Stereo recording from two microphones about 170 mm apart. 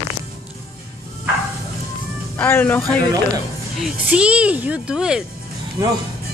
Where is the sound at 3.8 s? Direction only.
5° right (ahead or behind).